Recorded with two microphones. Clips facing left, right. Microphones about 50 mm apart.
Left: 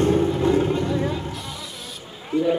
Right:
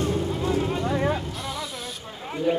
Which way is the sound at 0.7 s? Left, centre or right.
Right.